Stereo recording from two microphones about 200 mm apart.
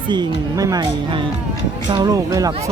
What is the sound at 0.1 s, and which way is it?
Speech, 20° right (ahead or behind).